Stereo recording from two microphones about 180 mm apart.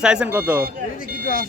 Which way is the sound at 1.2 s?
50° left (ahead or behind).